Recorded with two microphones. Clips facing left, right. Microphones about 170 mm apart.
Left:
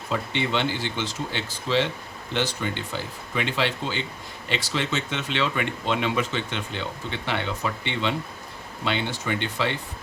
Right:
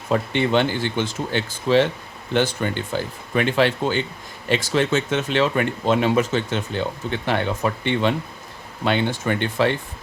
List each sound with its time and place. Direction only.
0.1 s speech: 50° right (ahead or behind)